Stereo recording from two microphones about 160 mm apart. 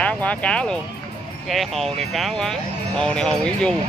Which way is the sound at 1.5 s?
Centre (ahead or behind).